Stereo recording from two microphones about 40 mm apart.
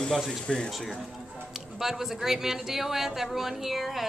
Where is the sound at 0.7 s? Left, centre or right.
Centre.